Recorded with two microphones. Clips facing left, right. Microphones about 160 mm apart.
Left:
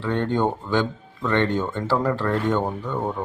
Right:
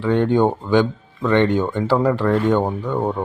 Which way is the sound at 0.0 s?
15° right (ahead or behind).